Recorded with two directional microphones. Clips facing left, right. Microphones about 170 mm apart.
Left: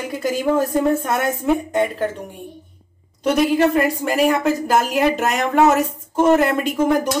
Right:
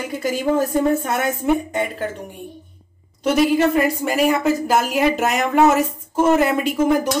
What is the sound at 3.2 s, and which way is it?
A woman's voice, 5° right (ahead or behind).